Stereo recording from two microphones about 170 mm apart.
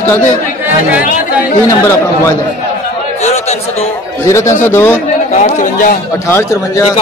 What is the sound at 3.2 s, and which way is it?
Chatter, 40° left (ahead or behind).